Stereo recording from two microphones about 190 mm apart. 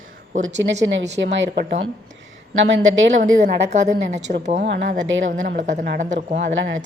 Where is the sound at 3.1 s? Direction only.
40° right (ahead or behind).